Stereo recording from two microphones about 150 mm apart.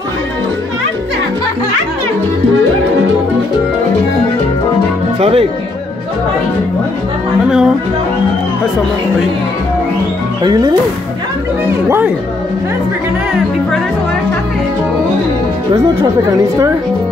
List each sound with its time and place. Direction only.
5.2 s speech: 40° right (ahead or behind)
7.4 s speech: 5° right (ahead or behind)
10.4 s speech: 25° right (ahead or behind)